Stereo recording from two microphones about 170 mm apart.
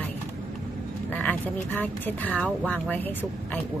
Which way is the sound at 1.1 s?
10° left (ahead or behind).